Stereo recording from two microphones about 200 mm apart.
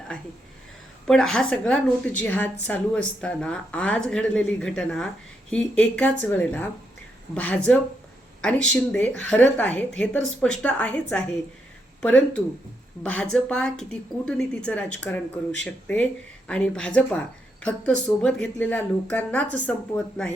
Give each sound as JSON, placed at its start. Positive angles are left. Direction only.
{"t": 1.0, "sound": "a woman's voice", "side_deg": 0}